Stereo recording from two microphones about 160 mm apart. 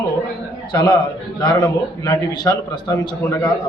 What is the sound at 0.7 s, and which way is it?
A man's voice, 25° left (ahead or behind).